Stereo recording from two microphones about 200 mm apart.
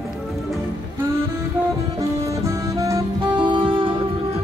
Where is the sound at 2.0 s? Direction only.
15° right (ahead or behind).